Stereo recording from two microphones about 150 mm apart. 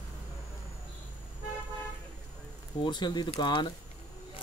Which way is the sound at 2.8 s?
30° left (ahead or behind).